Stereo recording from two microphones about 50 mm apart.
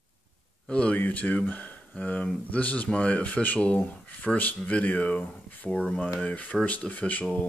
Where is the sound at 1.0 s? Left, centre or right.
Left.